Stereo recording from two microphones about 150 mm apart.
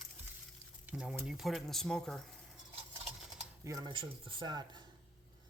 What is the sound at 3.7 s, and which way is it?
Speech, 20° right (ahead or behind).